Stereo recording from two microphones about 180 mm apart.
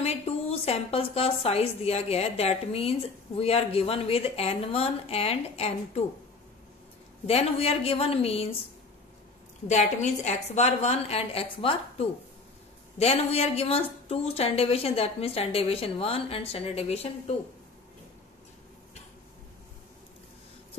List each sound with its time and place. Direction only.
0.0 s a woman's voice: 35° left (ahead or behind)
7.2 s a woman's voice: 35° left (ahead or behind)
9.7 s a woman's voice: 40° left (ahead or behind)